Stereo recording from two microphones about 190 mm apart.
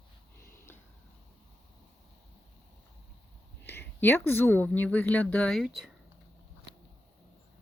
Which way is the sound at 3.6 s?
60° left (ahead or behind).